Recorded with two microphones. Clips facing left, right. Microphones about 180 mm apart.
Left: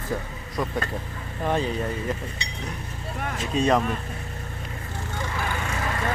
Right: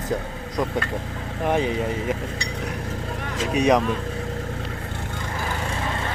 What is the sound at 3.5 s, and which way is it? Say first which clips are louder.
Speech: right 3 dB; 15° right (ahead or behind).